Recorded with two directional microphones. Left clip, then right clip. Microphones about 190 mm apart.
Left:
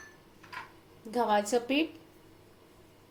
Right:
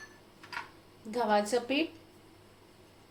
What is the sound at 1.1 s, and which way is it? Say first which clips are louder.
Speech: left 1 dB; 20° left (ahead or behind).